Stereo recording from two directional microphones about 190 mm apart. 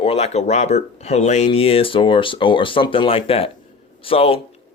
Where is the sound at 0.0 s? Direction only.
30° left (ahead or behind).